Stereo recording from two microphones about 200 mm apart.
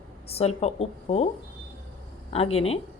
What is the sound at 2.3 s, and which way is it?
Speech, 30° left (ahead or behind).